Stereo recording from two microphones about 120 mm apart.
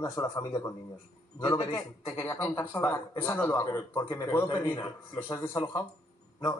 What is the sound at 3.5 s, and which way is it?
Speech, 30° left (ahead or behind).